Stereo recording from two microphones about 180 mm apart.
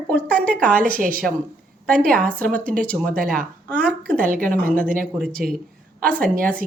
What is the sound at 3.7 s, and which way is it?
Speech, 5° left (ahead or behind).